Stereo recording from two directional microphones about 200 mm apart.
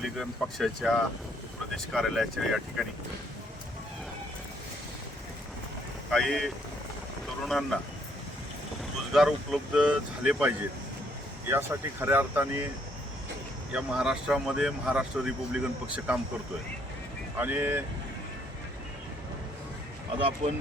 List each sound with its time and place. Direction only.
0.0 s speech: centre (ahead or behind)
6.1 s speech: centre (ahead or behind)
9.1 s speech: centre (ahead or behind)
13.7 s speech: 5° right (ahead or behind)
17.4 s speech: 10° right (ahead or behind)
20.1 s speech: 25° right (ahead or behind)